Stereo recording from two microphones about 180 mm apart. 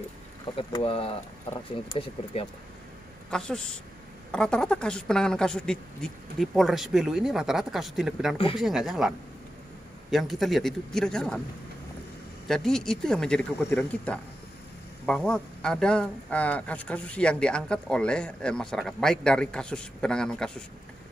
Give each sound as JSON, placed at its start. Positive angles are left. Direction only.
{"t": 0.6, "sound": "speech", "side_deg": 30}
{"t": 3.3, "sound": "a woman's voice", "side_deg": 5}
{"t": 10.1, "sound": "speech", "side_deg": 0}
{"t": 12.4, "sound": "speech", "side_deg": 5}